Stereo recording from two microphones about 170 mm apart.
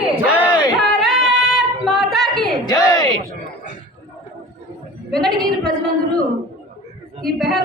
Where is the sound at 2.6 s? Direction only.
20° left (ahead or behind).